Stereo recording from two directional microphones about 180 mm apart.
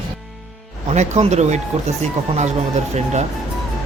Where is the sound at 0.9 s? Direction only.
40° right (ahead or behind).